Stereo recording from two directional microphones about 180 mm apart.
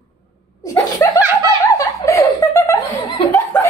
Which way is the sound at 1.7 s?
15° left (ahead or behind).